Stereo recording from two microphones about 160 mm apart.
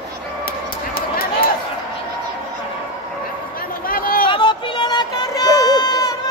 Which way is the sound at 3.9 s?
65° left (ahead or behind).